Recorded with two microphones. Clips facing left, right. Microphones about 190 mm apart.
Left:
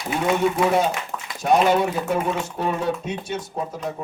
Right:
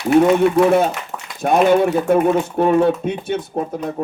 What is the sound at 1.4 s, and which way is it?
Speech, 55° right (ahead or behind).